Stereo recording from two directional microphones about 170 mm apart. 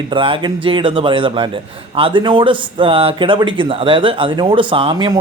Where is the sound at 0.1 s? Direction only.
30° right (ahead or behind).